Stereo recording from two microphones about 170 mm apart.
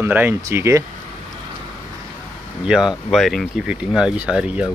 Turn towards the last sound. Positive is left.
turn(degrees=-5)  # may be behind; listen again after turning